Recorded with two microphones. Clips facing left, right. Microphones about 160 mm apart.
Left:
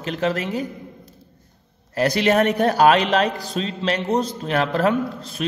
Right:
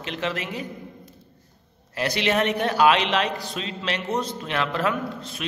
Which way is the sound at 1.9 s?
40° left (ahead or behind).